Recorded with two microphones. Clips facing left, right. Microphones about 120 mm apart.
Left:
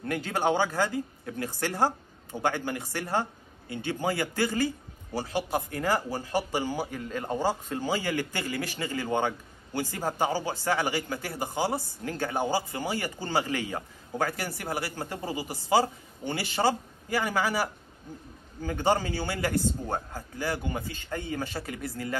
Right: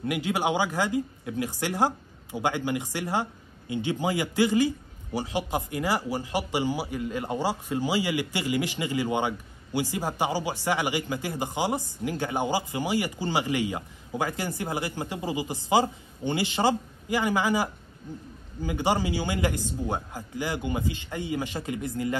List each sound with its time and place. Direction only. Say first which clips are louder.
0.0 s speech: right 1 dB; 15° right (ahead or behind)